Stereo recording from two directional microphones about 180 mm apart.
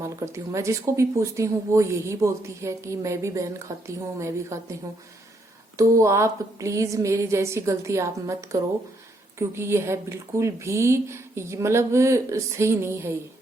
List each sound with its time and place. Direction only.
0.0 s speech: 15° right (ahead or behind)
5.7 s speech: 15° right (ahead or behind)